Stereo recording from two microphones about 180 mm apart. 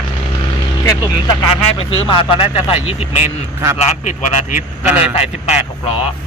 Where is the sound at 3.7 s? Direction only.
40° left (ahead or behind).